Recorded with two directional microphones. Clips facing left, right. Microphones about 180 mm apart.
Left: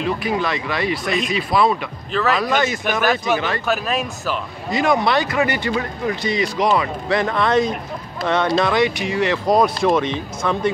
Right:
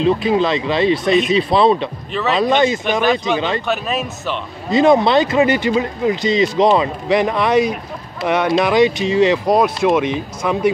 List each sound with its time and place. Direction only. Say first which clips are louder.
0.0 s speech: right 6 dB; 25° right (ahead or behind)
3.6 s speech: right 1 dB; centre (ahead or behind)
4.6 s speech: right 6 dB; 25° right (ahead or behind)
9.5 s speech: right 2 dB; 5° right (ahead or behind)